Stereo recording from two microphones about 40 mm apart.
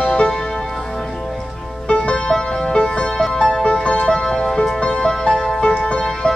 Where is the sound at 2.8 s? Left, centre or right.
Left.